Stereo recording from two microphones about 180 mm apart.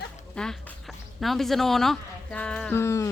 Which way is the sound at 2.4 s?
5° left (ahead or behind).